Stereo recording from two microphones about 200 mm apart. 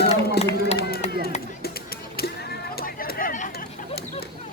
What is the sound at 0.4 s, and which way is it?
Run, 55° left (ahead or behind).